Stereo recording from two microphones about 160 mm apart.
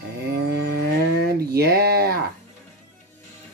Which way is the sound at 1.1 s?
85° right.